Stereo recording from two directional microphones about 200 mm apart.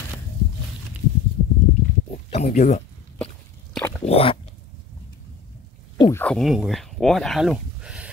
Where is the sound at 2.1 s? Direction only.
35° left (ahead or behind).